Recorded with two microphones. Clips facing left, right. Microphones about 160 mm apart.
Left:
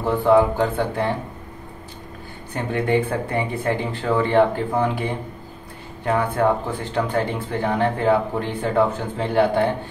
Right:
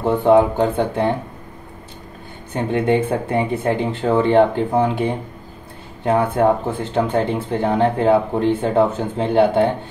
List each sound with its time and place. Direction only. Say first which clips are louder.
0.0 s speech: right 3 dB; 20° right (ahead or behind)
2.5 s speech: right 3 dB; 25° right (ahead or behind)